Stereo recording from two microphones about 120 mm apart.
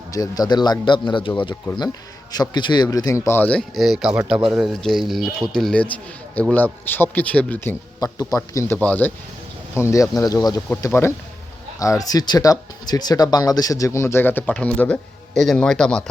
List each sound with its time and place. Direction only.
0.1 s speech: 30° left (ahead or behind)
2.3 s speech: 35° left (ahead or behind); by 3.6 s 15° left (ahead or behind)
3.8 s a man's voice: centre (ahead or behind); by 7.8 s 15° left (ahead or behind)
7.9 s speech: 30° left (ahead or behind); by 9.1 s 15° left (ahead or behind)
9.7 s speech: 25° left (ahead or behind)
10.7 s speech: 20° left (ahead or behind)